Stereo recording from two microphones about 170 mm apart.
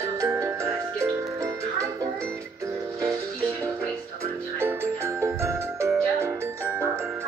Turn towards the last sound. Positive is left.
turn(degrees=-15)  # may be behind; listen again after turning